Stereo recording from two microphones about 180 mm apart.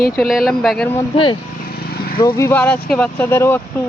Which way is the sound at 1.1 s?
30° left (ahead or behind).